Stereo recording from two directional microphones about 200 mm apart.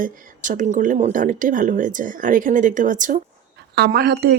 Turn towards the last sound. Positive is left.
turn(degrees=-55)  # may be behind; listen again after turning